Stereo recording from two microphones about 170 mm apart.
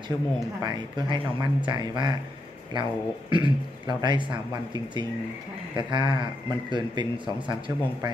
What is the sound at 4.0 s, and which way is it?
Speech, 25° right (ahead or behind).